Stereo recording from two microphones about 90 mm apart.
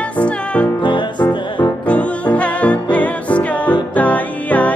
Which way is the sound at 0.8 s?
60° left (ahead or behind).